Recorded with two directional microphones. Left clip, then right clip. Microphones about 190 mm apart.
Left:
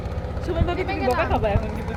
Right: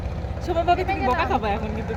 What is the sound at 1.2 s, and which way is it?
Speech, 65° right (ahead or behind).